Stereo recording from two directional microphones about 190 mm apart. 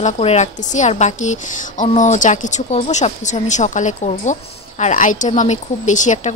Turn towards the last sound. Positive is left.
turn(degrees=40)  # may be behind; listen again after turning